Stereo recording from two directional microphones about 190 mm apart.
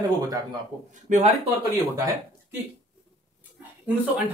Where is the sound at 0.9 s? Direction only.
40° right (ahead or behind).